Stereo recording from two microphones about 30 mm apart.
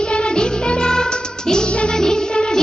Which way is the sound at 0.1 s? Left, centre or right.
Left.